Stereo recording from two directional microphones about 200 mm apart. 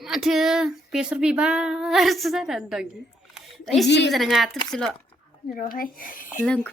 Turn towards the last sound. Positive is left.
turn(degrees=45)  # may be behind; listen again after turning